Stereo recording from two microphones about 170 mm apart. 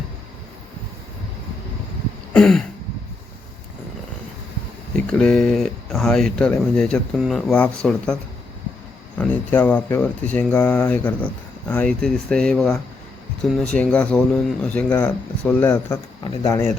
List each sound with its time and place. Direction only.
2.3 s speech: 5° left (ahead or behind)
5.1 s speech: 5° left (ahead or behind)
9.1 s speech: 10° left (ahead or behind)
15.7 s a man's voice: 25° left (ahead or behind)